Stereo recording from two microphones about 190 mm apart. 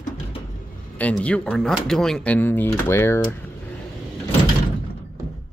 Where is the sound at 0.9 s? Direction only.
5° left (ahead or behind).